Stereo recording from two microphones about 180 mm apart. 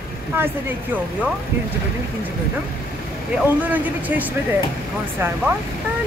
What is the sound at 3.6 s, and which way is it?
Speech, 10° right (ahead or behind).